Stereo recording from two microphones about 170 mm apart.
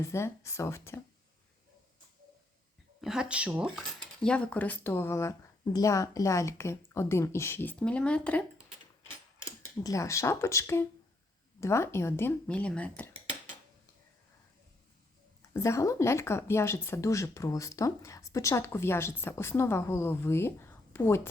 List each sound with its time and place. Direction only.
0.0 s a woman's voice: 15° left (ahead or behind)
3.0 s a woman's voice: 5° right (ahead or behind)
9.8 s a woman's voice: 20° left (ahead or behind)
15.4 s a woman's voice: 15° left (ahead or behind)